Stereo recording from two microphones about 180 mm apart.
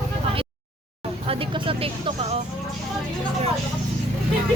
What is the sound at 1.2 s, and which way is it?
Speech, 30° right (ahead or behind).